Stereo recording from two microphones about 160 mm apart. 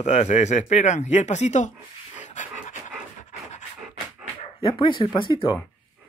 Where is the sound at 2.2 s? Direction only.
50° left (ahead or behind).